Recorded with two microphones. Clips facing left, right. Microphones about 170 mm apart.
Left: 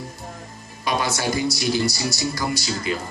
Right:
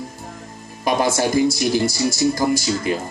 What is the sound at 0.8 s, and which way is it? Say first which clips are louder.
Speech: right 5 dB; 50° right (ahead or behind).